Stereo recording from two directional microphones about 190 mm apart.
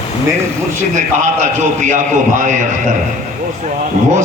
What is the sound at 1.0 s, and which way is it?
A man's voice, 40° right (ahead or behind).